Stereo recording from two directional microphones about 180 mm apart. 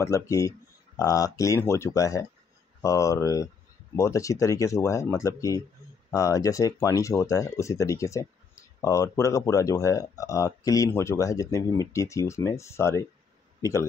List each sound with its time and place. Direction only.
0.0 s a man's voice: 15° left (ahead or behind)